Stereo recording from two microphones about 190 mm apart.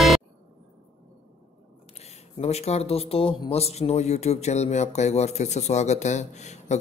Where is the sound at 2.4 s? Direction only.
35° left (ahead or behind).